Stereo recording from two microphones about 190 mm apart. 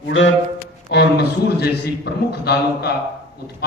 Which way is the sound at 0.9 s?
60° left (ahead or behind).